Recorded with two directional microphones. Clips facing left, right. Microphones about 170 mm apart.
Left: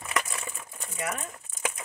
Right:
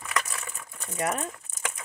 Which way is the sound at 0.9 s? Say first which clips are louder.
Right 5 dB; 40° right (ahead or behind).